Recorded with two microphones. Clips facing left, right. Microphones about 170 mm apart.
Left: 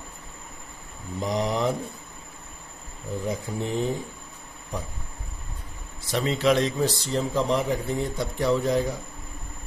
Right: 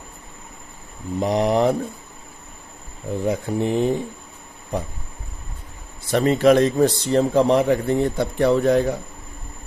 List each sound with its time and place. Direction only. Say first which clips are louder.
1.2 s a man's voice: right 7 dB; 65° right (ahead or behind)
3.2 s a man's voice: right 8 dB; 65° right (ahead or behind)
6.1 s a man's voice: right 7 dB; 50° right (ahead or behind)